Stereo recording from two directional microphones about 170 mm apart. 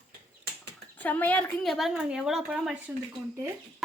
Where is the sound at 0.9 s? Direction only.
10° left (ahead or behind).